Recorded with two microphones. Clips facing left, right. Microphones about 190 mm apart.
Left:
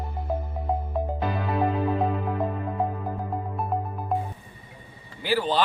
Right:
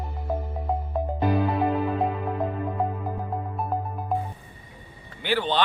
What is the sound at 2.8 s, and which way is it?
Music, centre (ahead or behind).